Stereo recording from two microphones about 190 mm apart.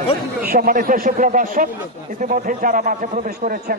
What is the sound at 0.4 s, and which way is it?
Speech, 45° right (ahead or behind).